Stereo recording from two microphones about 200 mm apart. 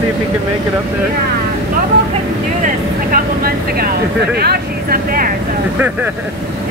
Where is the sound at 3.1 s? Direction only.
50° right (ahead or behind).